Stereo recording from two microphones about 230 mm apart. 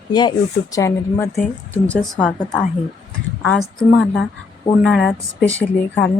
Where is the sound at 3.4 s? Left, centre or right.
Centre.